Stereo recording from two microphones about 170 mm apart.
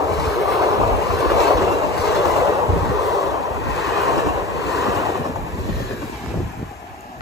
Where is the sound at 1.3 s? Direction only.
20° right (ahead or behind).